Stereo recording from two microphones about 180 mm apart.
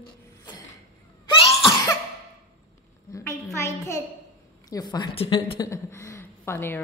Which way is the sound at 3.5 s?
15° left (ahead or behind).